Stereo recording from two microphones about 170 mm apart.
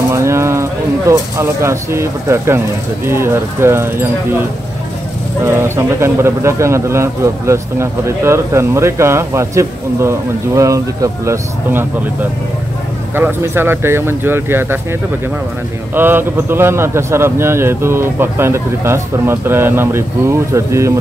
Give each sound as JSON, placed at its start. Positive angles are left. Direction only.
{"t": 0.1, "sound": "speech", "side_deg": -15}
{"t": 5.4, "sound": "speech", "side_deg": -15}